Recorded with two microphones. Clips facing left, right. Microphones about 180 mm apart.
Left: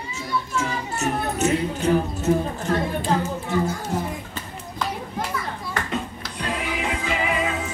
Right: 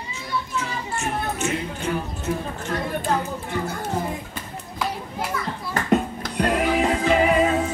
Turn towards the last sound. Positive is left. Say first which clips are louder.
# right 7 dB
turn(degrees=-40)  # may be behind; listen again after turning